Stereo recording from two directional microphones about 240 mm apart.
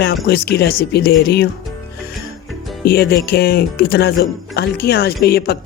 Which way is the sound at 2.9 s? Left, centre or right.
Left.